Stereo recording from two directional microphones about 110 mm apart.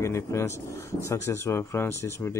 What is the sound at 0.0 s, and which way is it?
Speech, 25° left (ahead or behind).